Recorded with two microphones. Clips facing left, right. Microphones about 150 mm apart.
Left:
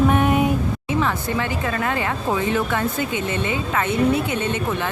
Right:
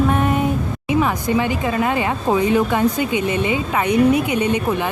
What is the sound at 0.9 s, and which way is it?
Speech, 15° right (ahead or behind).